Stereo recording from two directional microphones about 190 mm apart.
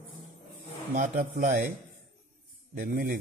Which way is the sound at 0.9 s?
45° right (ahead or behind).